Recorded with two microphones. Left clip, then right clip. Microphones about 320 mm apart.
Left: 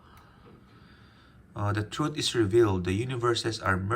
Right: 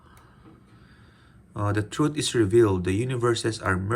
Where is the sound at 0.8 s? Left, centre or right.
Centre.